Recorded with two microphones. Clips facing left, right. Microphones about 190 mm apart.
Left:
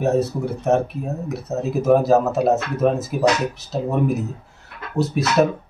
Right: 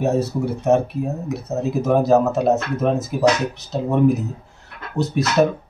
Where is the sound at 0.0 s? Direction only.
Centre (ahead or behind).